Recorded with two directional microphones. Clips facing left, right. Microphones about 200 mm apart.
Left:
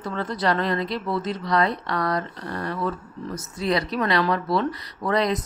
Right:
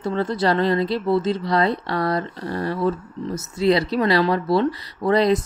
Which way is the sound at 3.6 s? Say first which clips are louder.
Right 5 dB; 25° right (ahead or behind).